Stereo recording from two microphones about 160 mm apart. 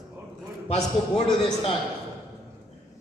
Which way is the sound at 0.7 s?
45° left (ahead or behind).